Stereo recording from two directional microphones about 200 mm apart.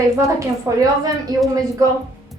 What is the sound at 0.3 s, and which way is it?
A woman's voice, 15° right (ahead or behind).